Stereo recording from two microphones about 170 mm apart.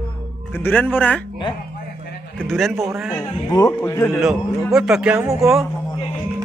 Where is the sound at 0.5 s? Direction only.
10° left (ahead or behind).